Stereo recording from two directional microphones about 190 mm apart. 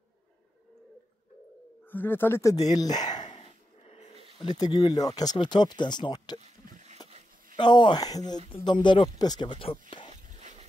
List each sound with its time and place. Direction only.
1.9 s speech: 10° left (ahead or behind)
3.3 s dog: 35° left (ahead or behind)
4.4 s speech: 20° left (ahead or behind)
6.4 s boat: 40° right (ahead or behind)
7.5 s speech: 25° left (ahead or behind)
10.4 s a sound: 35° right (ahead or behind)